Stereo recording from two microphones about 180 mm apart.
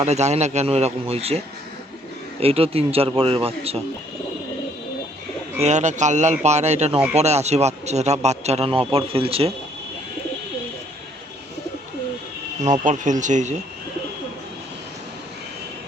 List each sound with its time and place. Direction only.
0.0 s a man's voice: 40° right (ahead or behind)
2.4 s a man's voice: 30° right (ahead or behind)
5.5 s a man's voice: 40° right (ahead or behind)
12.8 s speech: 45° right (ahead or behind)